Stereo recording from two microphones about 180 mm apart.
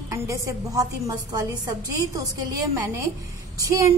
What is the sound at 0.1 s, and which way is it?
A woman's voice, 20° right (ahead or behind).